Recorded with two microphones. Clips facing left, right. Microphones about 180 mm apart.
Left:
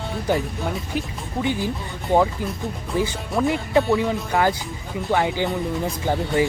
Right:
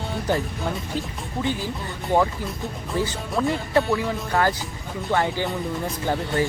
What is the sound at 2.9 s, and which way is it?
Speech, 15° left (ahead or behind).